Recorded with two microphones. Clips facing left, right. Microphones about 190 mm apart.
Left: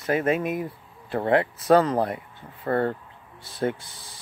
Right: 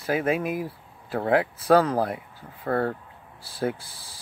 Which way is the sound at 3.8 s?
30° right (ahead or behind).